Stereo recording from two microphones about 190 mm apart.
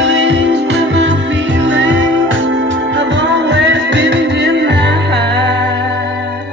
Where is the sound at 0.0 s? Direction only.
70° right (ahead or behind).